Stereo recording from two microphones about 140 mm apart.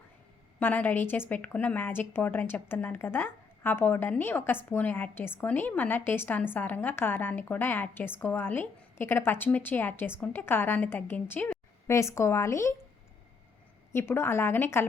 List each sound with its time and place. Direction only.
0.6 s a woman's voice: 10° left (ahead or behind)
13.9 s a woman's voice: 15° left (ahead or behind)